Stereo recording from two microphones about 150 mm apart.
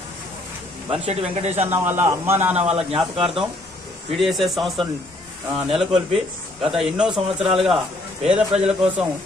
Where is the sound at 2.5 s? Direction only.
45° right (ahead or behind).